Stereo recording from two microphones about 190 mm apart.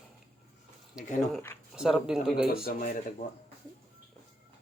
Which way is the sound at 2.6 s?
45° left (ahead or behind).